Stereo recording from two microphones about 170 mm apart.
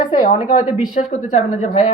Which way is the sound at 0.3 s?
40° left (ahead or behind).